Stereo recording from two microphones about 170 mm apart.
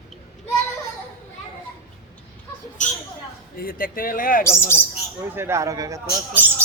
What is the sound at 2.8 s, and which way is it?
Speech, 45° left (ahead or behind).